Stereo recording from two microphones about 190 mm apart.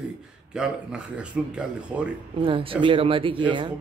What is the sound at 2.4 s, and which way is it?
Speech, 30° right (ahead or behind).